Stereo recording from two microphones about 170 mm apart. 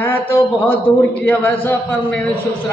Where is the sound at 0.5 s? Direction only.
30° left (ahead or behind).